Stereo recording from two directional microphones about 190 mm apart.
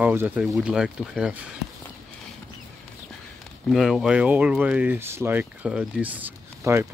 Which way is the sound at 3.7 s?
Centre (ahead or behind).